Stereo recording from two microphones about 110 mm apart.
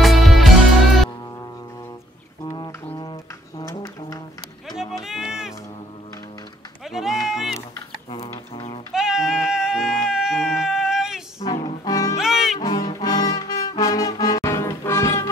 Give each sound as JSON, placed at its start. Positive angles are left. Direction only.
{"t": 0.0, "sound": "music", "side_deg": 0}
{"t": 3.0, "sound": "a sound", "side_deg": 35}
{"t": 5.0, "sound": "music", "side_deg": -5}
{"t": 6.9, "sound": "music", "side_deg": -5}
{"t": 8.1, "sound": "a sound", "side_deg": 60}
{"t": 8.9, "sound": "a sound", "side_deg": -5}
{"t": 11.4, "sound": "music", "side_deg": 35}
{"t": 12.2, "sound": "music", "side_deg": -5}
{"t": 12.6, "sound": "brass instrument", "side_deg": 35}